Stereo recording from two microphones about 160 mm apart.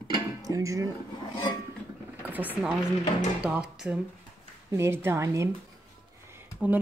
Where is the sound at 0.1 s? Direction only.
20° right (ahead or behind).